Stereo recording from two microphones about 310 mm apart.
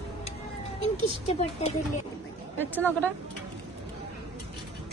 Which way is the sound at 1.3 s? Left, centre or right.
Centre.